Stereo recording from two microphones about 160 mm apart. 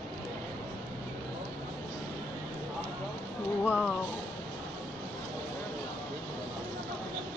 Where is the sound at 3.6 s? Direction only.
10° right (ahead or behind).